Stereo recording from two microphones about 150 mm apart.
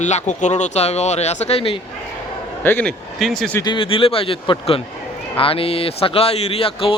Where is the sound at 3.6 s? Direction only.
35° left (ahead or behind).